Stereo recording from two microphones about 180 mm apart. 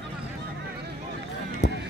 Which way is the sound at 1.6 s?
75° left (ahead or behind).